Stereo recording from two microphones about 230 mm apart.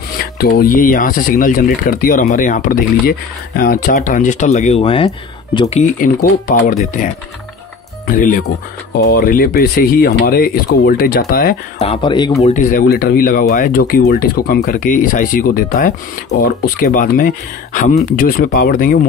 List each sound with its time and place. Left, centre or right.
0.2 s speech: left
8.1 s speech: left
11.8 s speech: left
12.4 s speech: left